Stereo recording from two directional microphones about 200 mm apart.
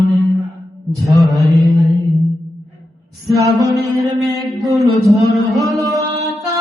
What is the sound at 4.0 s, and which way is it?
Mantra, centre (ahead or behind).